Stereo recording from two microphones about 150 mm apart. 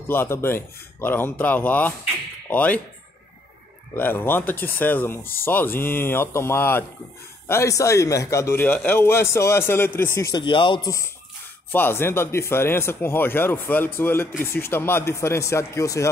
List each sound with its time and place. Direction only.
0.1 s a man's voice: 15° left (ahead or behind)
3.9 s a man's voice: 15° left (ahead or behind)
10.3 s speech: 35° left (ahead or behind)
11.7 s a man's voice: 15° left (ahead or behind)